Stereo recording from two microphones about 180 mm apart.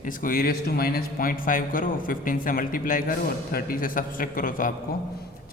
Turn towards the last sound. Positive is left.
turn(degrees=50)  # may be behind; listen again after turning